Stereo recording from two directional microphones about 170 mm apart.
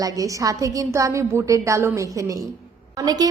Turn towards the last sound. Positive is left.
turn(degrees=-20)  # may be behind; listen again after turning